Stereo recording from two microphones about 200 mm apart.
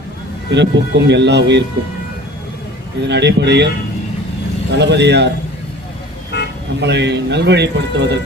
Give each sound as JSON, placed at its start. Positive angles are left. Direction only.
{"t": 0.5, "sound": "speech", "side_deg": -60}
{"t": 3.1, "sound": "speech", "side_deg": -60}
{"t": 4.8, "sound": "speech", "side_deg": -60}
{"t": 6.3, "sound": "toot", "side_deg": 60}
{"t": 6.7, "sound": "speech", "side_deg": -60}